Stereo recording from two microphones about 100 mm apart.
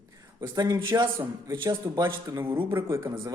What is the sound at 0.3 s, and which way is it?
Speech, 40° right (ahead or behind).